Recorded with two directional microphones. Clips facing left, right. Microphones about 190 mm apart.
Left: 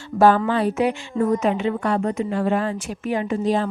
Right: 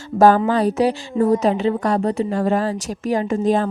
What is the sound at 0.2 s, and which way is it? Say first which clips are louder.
A woman's voice: right 3 dB; 40° right (ahead or behind).